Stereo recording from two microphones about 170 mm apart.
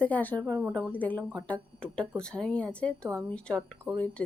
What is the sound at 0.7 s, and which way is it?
Speech, 5° left (ahead or behind).